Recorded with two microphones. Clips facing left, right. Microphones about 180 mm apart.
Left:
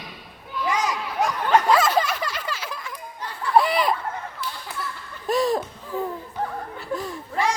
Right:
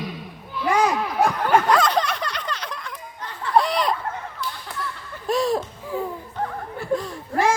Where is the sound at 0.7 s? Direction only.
55° right (ahead or behind).